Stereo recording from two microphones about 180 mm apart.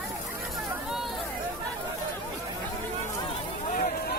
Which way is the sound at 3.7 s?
50° left (ahead or behind).